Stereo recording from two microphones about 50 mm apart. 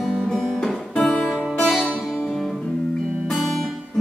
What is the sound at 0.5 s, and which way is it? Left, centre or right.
Music, centre.